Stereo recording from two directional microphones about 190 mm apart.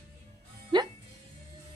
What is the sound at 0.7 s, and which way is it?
Music, 25° right (ahead or behind).